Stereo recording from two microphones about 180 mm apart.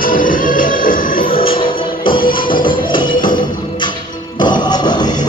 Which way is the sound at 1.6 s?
30° left (ahead or behind).